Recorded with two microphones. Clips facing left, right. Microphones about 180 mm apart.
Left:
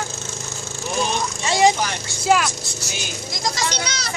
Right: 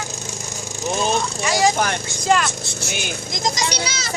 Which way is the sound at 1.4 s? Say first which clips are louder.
Left 3 dB; 25° left (ahead or behind).